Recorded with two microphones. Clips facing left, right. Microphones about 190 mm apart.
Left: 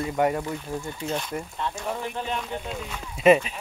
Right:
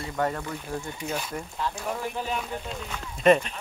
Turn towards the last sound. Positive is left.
turn(degrees=5)  # may be behind; listen again after turning